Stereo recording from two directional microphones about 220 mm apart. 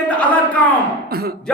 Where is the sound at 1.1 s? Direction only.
45° right (ahead or behind).